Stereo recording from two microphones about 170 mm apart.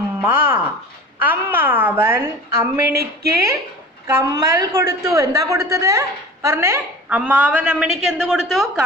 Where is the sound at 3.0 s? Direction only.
70° right (ahead or behind).